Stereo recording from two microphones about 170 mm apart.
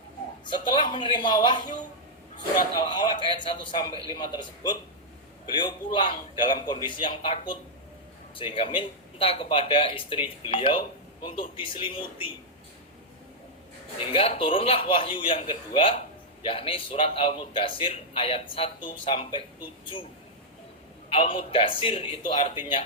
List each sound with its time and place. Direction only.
0.4 s a woman's voice: 25° left (ahead or behind)
2.8 s a man's voice: 25° left (ahead or behind)
14.1 s a man's voice: 35° left (ahead or behind)
21.1 s a man's voice: 30° left (ahead or behind)
22.2 s speech: 45° left (ahead or behind)